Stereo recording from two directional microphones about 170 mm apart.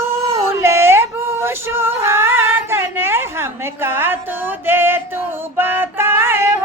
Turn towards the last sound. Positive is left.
turn(degrees=-15)  # may be behind; listen again after turning